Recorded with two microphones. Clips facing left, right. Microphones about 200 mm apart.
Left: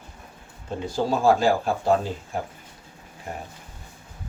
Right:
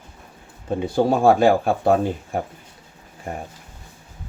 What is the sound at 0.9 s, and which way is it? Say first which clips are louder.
Speech: right 4 dB; 60° right (ahead or behind).